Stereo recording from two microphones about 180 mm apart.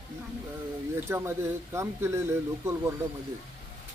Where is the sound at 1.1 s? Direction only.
15° right (ahead or behind).